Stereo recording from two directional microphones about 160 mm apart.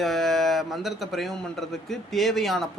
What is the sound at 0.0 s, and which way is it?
A man's voice, centre (ahead or behind).